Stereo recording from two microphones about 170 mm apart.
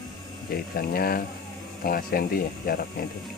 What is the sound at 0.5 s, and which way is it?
Speech, 60° left (ahead or behind).